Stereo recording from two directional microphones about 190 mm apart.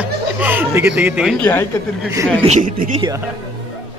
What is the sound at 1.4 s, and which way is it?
Speech, 10° left (ahead or behind).